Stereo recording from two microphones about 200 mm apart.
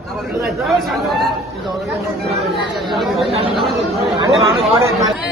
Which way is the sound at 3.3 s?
30° right (ahead or behind).